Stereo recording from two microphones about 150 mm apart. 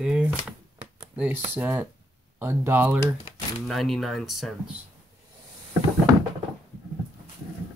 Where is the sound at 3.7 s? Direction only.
Centre (ahead or behind).